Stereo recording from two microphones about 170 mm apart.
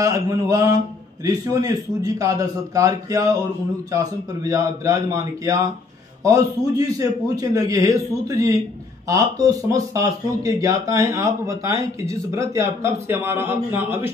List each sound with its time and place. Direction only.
0.0 s a man's voice: 20° right (ahead or behind)